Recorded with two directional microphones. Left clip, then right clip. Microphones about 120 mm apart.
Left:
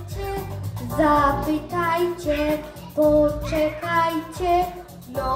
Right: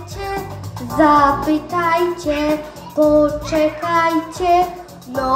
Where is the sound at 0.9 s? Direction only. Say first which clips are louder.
Right 6 dB; 20° left (ahead or behind).